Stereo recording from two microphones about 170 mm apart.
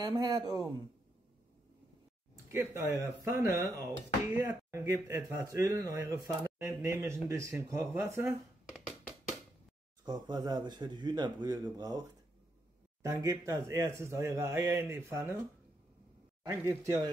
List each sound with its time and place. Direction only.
0.0 s speech: 25° right (ahead or behind)
2.5 s speech: 10° right (ahead or behind)
10.0 s speech: 25° right (ahead or behind)
13.0 s speech: 20° right (ahead or behind)
16.4 s speech: 20° right (ahead or behind)